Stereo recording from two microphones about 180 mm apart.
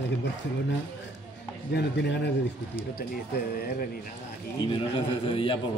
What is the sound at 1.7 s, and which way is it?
Speech, 70° left (ahead or behind).